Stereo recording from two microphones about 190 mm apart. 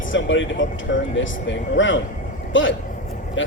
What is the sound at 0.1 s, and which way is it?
A man's voice, 85° left.